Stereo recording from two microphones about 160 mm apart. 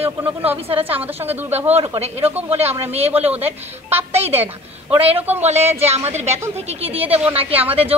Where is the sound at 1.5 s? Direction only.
40° right (ahead or behind).